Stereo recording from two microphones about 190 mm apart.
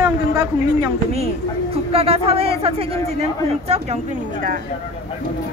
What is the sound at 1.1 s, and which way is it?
Speech, 35° right (ahead or behind).